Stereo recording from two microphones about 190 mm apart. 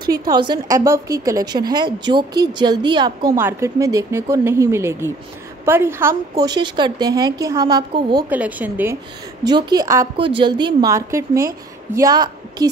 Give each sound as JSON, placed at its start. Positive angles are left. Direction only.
{"t": 0.1, "sound": "a woman's voice", "side_deg": -20}
{"t": 8.3, "sound": "speech", "side_deg": -10}
{"t": 9.4, "sound": "a woman's voice", "side_deg": -20}